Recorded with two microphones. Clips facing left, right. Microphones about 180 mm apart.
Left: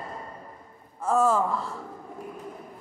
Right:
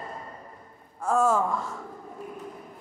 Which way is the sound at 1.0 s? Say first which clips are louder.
Left 1 dB; centre (ahead or behind).